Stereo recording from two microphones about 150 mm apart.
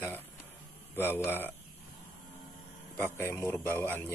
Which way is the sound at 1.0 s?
15° left (ahead or behind).